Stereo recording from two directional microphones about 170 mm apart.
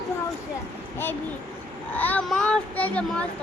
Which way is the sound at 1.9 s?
10° left (ahead or behind).